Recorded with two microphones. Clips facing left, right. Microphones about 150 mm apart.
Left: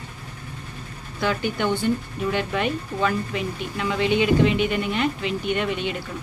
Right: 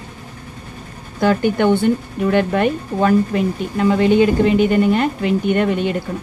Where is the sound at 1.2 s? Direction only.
45° right (ahead or behind).